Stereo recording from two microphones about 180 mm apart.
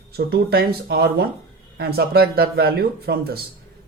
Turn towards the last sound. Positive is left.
turn(degrees=-60)  # may be behind; listen again after turning